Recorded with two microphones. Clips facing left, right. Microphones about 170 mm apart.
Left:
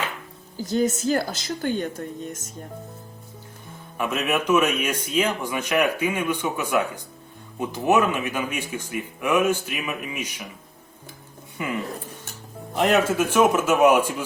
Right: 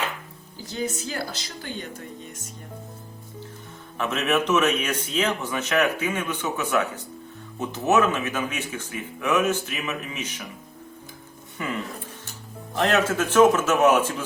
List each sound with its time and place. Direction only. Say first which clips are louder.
0.5 s speech: left 7 dB; 45° left (ahead or behind)
3.9 s a man's voice: right 1 dB; 10° left (ahead or behind)
11.5 s a man's voice: left 2 dB; 10° left (ahead or behind)